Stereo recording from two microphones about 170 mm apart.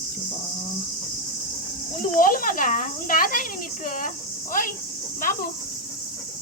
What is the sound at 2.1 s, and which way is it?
Speech, 55° left (ahead or behind).